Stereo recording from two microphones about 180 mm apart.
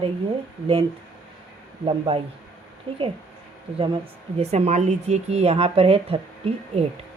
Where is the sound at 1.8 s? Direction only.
30° right (ahead or behind).